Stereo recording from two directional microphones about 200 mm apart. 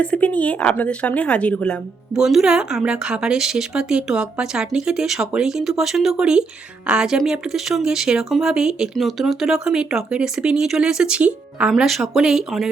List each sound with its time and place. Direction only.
0.0 s a woman's voice: 5° left (ahead or behind)